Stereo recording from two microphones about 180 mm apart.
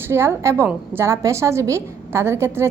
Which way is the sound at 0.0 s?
15° right (ahead or behind).